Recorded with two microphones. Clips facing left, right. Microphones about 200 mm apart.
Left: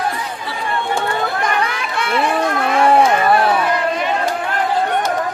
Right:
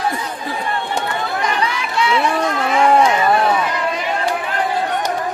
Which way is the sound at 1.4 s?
55° left (ahead or behind).